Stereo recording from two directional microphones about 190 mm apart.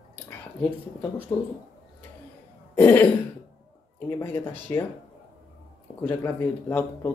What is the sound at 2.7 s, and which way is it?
Speech, 10° left (ahead or behind).